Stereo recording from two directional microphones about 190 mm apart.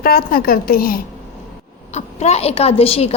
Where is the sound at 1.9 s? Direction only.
35° left (ahead or behind).